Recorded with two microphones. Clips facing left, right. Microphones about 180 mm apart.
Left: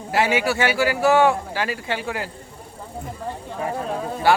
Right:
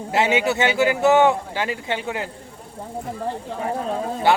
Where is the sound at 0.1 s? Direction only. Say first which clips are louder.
Right 1 dB; 20° right (ahead or behind).